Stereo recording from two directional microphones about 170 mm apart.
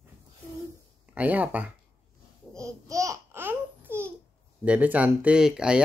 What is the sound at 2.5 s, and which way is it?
Babbling, 20° right (ahead or behind).